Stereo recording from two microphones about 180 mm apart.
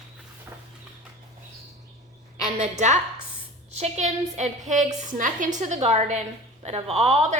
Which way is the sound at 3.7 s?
35° right (ahead or behind).